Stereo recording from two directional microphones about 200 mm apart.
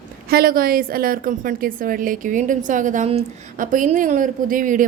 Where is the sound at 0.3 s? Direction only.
50° right (ahead or behind).